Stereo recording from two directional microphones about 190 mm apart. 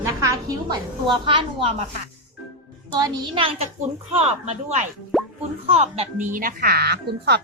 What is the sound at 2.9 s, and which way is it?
A woman's voice, 20° right (ahead or behind).